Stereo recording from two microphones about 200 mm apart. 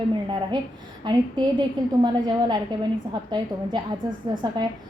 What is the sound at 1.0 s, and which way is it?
A woman's voice, 20° right (ahead or behind).